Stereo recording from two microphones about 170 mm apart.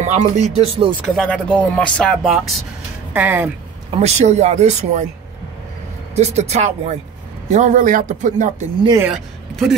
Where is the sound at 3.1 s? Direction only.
10° right (ahead or behind).